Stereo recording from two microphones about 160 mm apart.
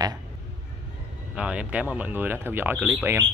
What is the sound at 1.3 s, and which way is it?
Speech, 5° right (ahead or behind).